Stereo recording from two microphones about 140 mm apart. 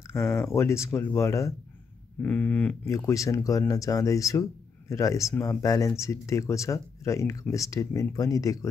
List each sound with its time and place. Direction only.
0.1 s speech: 20° left (ahead or behind)
2.2 s speech: 10° left (ahead or behind)
2.8 s speech: 20° left (ahead or behind)